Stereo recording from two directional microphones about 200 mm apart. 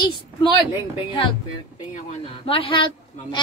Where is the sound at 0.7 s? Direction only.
25° left (ahead or behind).